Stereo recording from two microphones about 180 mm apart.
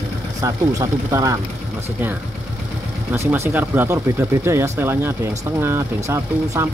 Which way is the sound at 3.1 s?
15° right (ahead or behind).